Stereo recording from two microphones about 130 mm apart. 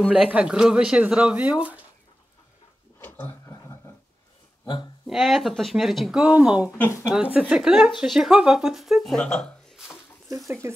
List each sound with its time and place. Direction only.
0.1 s speech: 5° right (ahead or behind)
3.0 s a sound: 15° left (ahead or behind)
5.0 s speech: centre (ahead or behind)
6.8 s speech: 20° left (ahead or behind)
7.3 s speech: 5° right (ahead or behind)